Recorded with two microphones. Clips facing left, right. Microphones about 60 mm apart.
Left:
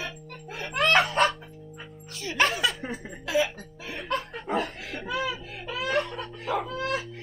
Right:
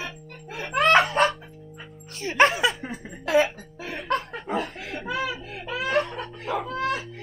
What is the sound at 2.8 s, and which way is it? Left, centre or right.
Chuckle, centre.